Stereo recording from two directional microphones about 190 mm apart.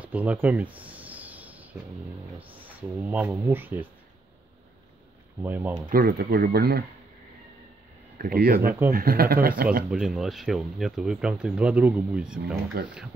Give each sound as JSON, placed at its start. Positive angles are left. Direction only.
{"t": 0.0, "sound": "a sound", "side_deg": -10}
{"t": 2.6, "sound": "speech", "side_deg": -10}
{"t": 5.4, "sound": "speech", "side_deg": -10}
{"t": 5.9, "sound": "speech", "side_deg": -50}
{"t": 8.2, "sound": "speech", "side_deg": -55}
{"t": 9.8, "sound": "speech", "side_deg": 0}